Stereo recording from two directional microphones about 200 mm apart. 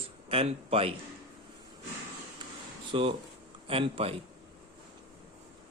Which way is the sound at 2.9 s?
30° right (ahead or behind).